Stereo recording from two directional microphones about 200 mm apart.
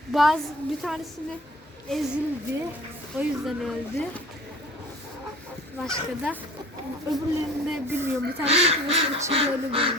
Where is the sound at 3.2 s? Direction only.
Centre (ahead or behind).